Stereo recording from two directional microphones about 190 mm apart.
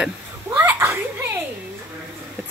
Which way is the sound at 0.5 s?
10° right (ahead or behind).